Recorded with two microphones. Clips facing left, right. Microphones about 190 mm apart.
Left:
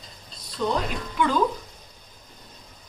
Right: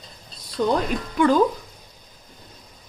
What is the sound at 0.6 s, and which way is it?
Speech, 65° right (ahead or behind).